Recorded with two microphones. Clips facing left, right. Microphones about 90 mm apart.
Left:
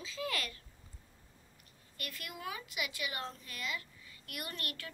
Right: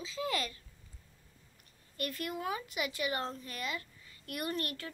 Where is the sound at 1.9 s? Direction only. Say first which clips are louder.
Right 8 dB; 35° right (ahead or behind).